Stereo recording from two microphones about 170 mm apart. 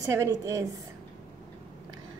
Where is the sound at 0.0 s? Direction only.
20° right (ahead or behind).